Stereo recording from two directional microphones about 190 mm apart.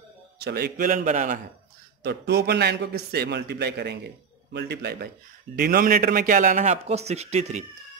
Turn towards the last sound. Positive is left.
turn(degrees=-35)  # may be behind; listen again after turning